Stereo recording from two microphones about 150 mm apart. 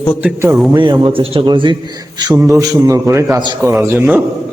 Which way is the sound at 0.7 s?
30° right (ahead or behind).